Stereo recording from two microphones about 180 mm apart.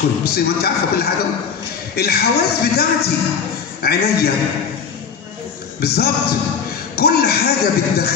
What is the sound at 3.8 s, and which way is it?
Speech, 60° left (ahead or behind).